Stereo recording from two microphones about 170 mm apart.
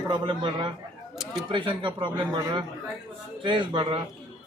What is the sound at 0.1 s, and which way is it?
A man's voice, 30° right (ahead or behind).